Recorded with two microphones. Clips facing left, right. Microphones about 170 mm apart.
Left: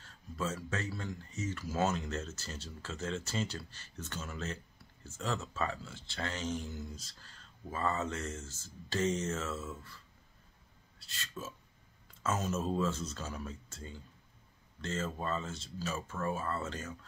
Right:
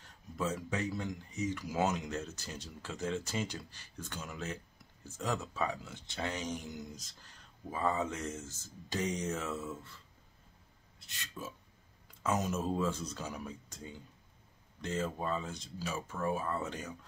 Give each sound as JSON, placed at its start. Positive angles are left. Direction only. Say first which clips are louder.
{"t": 0.0, "sound": "speech", "louder": "right 1 dB", "side_deg": -15}
{"t": 11.0, "sound": "speech", "louder": "left 1 dB", "side_deg": -15}